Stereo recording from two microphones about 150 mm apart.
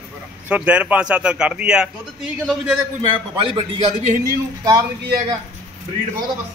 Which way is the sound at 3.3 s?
35° right (ahead or behind).